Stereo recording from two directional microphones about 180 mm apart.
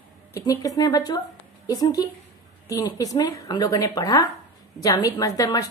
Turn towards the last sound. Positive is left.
turn(degrees=20)  # may be behind; listen again after turning